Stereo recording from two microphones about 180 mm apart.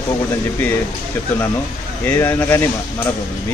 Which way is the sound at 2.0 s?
10° left (ahead or behind).